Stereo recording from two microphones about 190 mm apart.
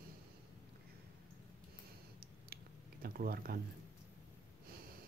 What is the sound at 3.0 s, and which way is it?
Speech, 50° right (ahead or behind).